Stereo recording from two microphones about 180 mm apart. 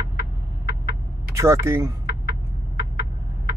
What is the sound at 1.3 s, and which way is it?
Speech, 15° right (ahead or behind).